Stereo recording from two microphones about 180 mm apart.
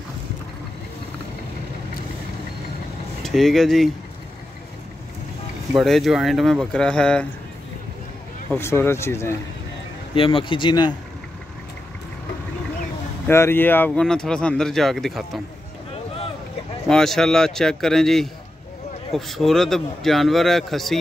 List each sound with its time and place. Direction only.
3.3 s speech: centre (ahead or behind)
5.7 s speech: centre (ahead or behind)
8.5 s speech: 15° left (ahead or behind)
10.1 s speech: 30° left (ahead or behind)
13.3 s speech: 15° left (ahead or behind)
16.8 s speech: centre (ahead or behind)